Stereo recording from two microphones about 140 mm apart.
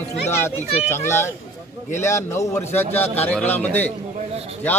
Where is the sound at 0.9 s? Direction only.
20° left (ahead or behind).